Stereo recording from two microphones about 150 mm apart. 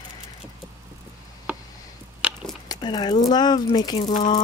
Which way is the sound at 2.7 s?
30° left (ahead or behind).